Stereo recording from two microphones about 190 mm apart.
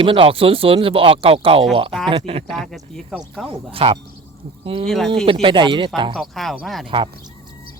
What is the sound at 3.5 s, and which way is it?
Speech, 30° right (ahead or behind).